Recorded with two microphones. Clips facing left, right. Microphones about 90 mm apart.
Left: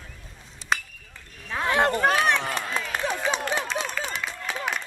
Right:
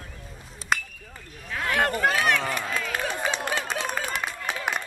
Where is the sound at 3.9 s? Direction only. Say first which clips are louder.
Right 2 dB; 50° right (ahead or behind).